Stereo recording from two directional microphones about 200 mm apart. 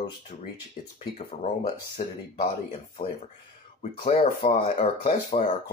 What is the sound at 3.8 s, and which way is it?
Speech, 30° left (ahead or behind).